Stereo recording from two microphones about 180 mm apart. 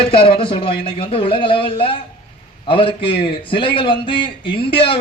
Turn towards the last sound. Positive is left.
turn(degrees=30)  # may be behind; listen again after turning